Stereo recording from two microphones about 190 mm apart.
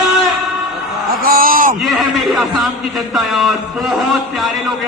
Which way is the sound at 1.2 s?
50° right (ahead or behind).